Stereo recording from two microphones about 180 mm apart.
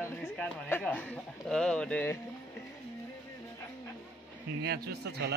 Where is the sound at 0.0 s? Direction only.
15° left (ahead or behind).